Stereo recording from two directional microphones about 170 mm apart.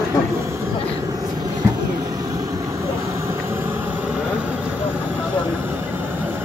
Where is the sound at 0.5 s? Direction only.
20° right (ahead or behind).